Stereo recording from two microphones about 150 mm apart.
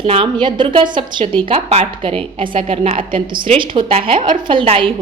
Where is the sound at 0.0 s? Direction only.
35° right (ahead or behind).